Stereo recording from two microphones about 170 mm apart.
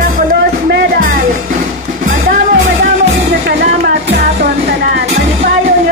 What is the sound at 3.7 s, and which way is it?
Music, 75° right (ahead or behind).